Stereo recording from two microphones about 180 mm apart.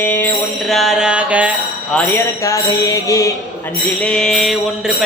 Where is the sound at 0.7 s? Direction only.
Centre (ahead or behind).